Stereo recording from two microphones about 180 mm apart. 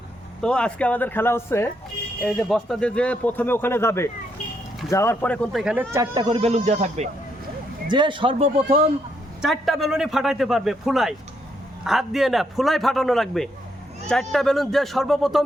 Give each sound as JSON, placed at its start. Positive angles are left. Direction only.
{"t": 0.4, "sound": "speech", "side_deg": 5}
{"t": 2.2, "sound": "a man's voice", "side_deg": 0}
{"t": 5.9, "sound": "speech", "side_deg": -20}
{"t": 6.2, "sound": "speech", "side_deg": -35}
{"t": 7.9, "sound": "speech", "side_deg": -25}
{"t": 9.4, "sound": "a man's voice", "side_deg": 0}